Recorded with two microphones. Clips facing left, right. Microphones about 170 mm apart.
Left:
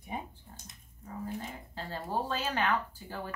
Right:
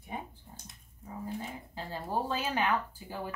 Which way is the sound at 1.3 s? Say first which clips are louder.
Right 2 dB; centre (ahead or behind).